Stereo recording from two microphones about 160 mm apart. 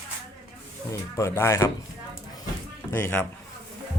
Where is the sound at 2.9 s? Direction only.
10° left (ahead or behind).